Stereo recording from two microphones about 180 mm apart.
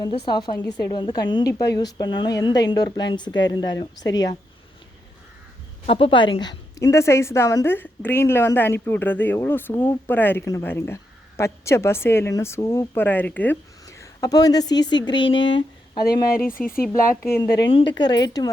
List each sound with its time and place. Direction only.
0.0 s a woman's voice: 25° left (ahead or behind)
5.8 s a woman's voice: 30° left (ahead or behind)
16.6 s speech: 50° left (ahead or behind)
17.2 s a woman's voice: 10° left (ahead or behind)
17.9 s a woman's voice: 25° left (ahead or behind)